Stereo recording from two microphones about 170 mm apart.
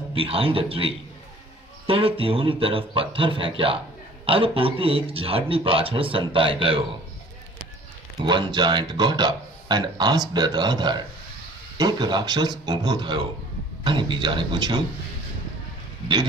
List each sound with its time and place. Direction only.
0.1 s speech: 35° right (ahead or behind)
8.2 s speech: 25° right (ahead or behind)